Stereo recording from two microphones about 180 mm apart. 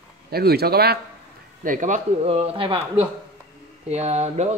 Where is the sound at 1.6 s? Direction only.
45° right (ahead or behind).